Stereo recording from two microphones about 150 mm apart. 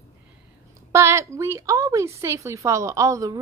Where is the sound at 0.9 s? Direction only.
20° right (ahead or behind).